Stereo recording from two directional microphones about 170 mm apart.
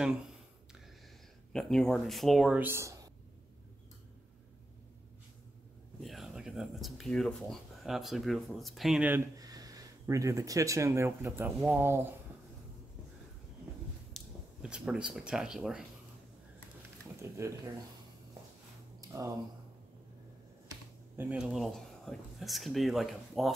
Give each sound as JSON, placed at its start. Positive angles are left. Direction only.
{"t": 1.5, "sound": "speech", "side_deg": 5}
{"t": 5.9, "sound": "speech", "side_deg": 0}
{"t": 9.4, "sound": "speech", "side_deg": -20}
{"t": 14.1, "sound": "speech", "side_deg": -5}
{"t": 17.2, "sound": "speech", "side_deg": -15}
{"t": 18.9, "sound": "a sound", "side_deg": -15}
{"t": 21.2, "sound": "speech", "side_deg": -5}